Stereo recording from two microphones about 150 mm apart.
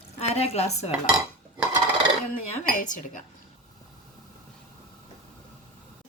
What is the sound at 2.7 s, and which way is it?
Speech, 60° left (ahead or behind).